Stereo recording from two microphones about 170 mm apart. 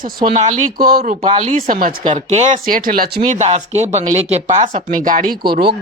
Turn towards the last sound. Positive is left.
turn(degrees=-70)  # may be behind; listen again after turning